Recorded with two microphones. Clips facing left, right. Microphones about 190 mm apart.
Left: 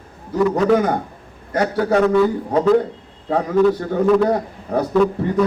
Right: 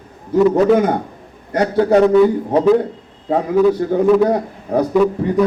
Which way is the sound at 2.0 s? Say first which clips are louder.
Right 4 dB; 20° right (ahead or behind).